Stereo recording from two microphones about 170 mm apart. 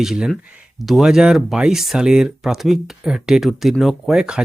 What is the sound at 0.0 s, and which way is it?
Speech, centre (ahead or behind).